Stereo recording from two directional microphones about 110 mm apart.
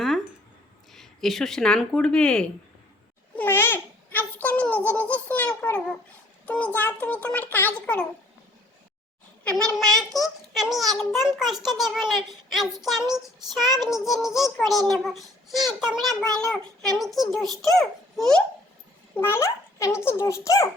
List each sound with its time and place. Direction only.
0.9 s a child's voice: centre (ahead or behind)
3.3 s babbling: 20° left (ahead or behind)
4.4 s child singing: 15° left (ahead or behind)
5.3 s a child's voice: 10° left (ahead or behind)
6.4 s a sound: 10° left (ahead or behind)
6.7 s a child's voice: 15° left (ahead or behind)
9.4 s a child's voice: 10° left (ahead or behind)
19.1 s a child's voice: 20° left (ahead or behind)